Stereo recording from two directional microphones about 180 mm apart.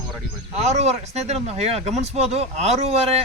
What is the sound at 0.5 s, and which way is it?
Speech, 35° right (ahead or behind).